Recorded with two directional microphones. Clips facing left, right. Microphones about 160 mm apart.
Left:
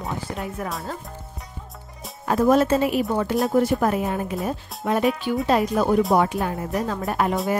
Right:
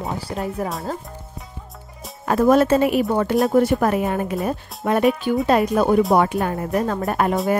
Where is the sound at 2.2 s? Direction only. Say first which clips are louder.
Right 3 dB; 60° right (ahead or behind).